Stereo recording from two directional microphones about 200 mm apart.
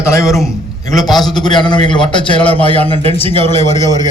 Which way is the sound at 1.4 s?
20° left (ahead or behind).